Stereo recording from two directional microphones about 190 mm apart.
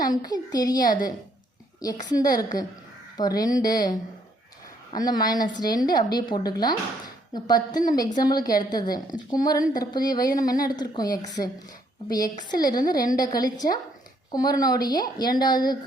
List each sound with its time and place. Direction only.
0.0 s a woman's voice: 20° left (ahead or behind)